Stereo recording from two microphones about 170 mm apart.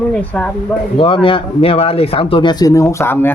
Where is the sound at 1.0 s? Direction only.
30° left (ahead or behind).